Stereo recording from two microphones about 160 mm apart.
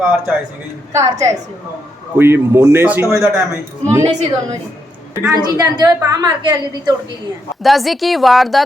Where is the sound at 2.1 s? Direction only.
15° right (ahead or behind).